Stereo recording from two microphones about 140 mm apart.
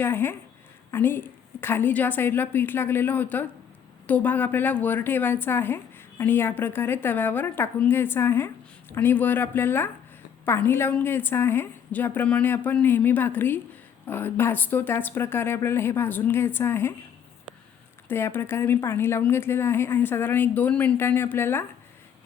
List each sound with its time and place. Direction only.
0.0 s a woman's voice: 15° left (ahead or behind)
18.1 s a woman's voice: 15° left (ahead or behind)